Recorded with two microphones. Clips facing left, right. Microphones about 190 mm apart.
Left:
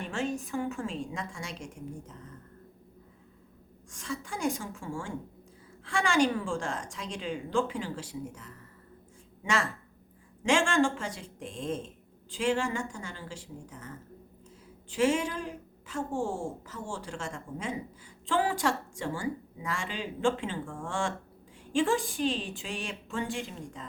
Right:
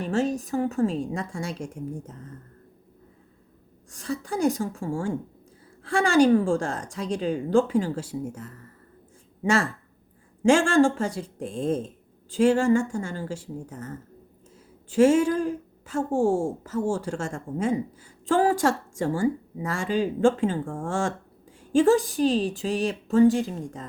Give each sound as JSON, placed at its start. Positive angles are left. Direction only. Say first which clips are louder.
{"t": 0.0, "sound": "a woman's voice", "louder": "right 8 dB", "side_deg": -40}
{"t": 3.9, "sound": "a woman's voice", "louder": "right 8 dB", "side_deg": -40}